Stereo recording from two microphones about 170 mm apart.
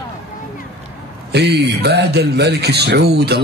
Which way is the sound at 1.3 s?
75° right (ahead or behind).